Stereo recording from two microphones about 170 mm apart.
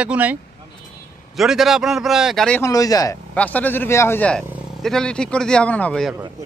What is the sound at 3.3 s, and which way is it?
Speech, 10° left (ahead or behind).